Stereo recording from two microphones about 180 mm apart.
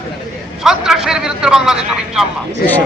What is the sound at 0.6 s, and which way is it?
Vehicle, 5° right (ahead or behind).